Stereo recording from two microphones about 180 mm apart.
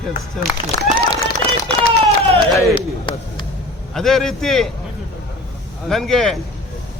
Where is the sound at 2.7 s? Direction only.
25° left (ahead or behind).